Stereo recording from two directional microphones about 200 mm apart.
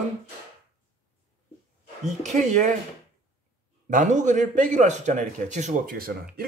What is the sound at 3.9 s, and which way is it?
A man's voice, 40° right (ahead or behind).